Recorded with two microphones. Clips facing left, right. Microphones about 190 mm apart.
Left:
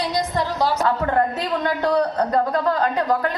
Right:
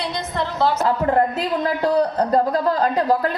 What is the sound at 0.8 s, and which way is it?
A man's voice, 30° right (ahead or behind).